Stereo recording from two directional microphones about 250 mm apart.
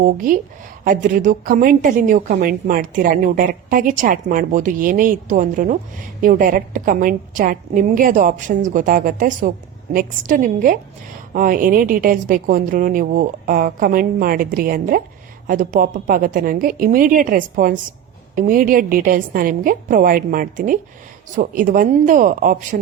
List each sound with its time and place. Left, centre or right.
0.0 s a woman's voice: right